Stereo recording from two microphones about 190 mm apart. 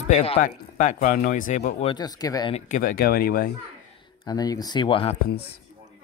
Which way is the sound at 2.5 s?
40° left (ahead or behind).